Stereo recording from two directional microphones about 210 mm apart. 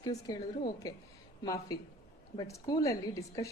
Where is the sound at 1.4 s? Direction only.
15° left (ahead or behind).